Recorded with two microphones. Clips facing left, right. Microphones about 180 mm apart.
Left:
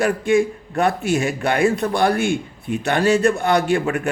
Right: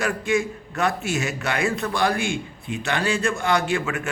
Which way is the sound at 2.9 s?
40° left (ahead or behind).